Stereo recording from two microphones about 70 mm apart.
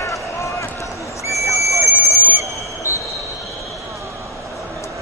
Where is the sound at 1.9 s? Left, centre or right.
Right.